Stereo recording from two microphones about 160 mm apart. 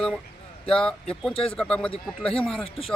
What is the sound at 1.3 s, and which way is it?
Speech, 35° left (ahead or behind).